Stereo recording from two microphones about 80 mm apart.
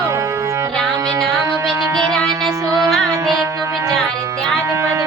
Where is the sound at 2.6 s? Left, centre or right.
Right.